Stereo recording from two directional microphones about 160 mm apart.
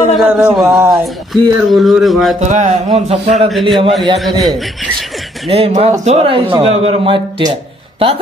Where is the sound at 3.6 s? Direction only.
30° right (ahead or behind).